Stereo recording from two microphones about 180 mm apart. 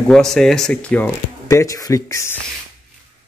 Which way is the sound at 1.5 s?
20° left (ahead or behind).